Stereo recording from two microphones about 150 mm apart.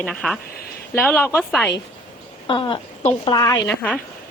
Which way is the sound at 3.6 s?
10° left (ahead or behind).